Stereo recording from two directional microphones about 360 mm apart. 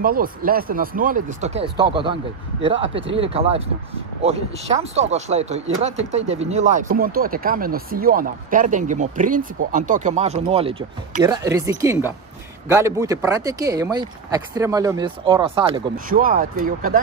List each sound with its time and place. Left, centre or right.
0.0 s chopping: right
2.6 s speech: centre
6.1 s chopping: centre
11.2 s speech: centre